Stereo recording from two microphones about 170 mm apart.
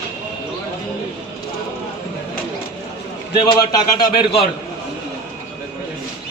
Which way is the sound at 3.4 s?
25° left (ahead or behind).